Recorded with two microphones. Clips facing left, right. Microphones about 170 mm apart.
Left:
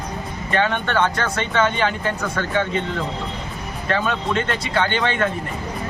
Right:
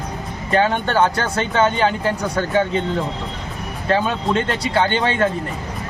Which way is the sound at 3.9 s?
30° right (ahead or behind).